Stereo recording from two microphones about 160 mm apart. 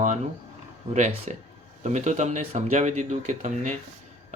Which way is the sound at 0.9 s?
50° right (ahead or behind).